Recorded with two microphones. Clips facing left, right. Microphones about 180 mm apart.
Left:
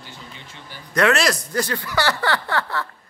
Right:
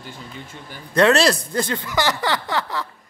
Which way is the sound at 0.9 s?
30° right (ahead or behind).